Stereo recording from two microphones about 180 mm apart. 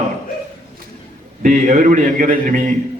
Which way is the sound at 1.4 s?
45° right (ahead or behind).